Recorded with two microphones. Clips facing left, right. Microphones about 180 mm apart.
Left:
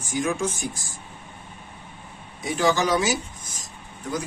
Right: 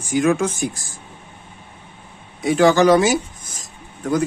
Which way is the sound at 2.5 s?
65° right (ahead or behind).